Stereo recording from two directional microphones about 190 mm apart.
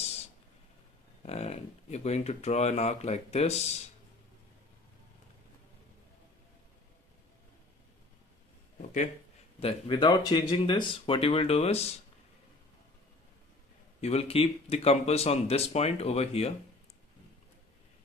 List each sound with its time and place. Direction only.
1.2 s speech: 35° left (ahead or behind)
9.6 s speech: 30° left (ahead or behind)
14.0 s speech: 30° left (ahead or behind)